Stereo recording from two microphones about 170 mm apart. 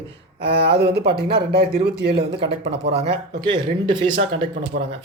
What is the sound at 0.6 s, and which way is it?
Speech, 75° right (ahead or behind).